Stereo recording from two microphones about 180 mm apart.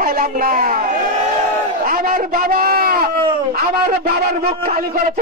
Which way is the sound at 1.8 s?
50° right (ahead or behind).